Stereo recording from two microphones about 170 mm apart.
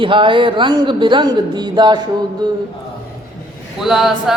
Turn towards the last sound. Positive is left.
turn(degrees=0)  # may be behind; listen again after turning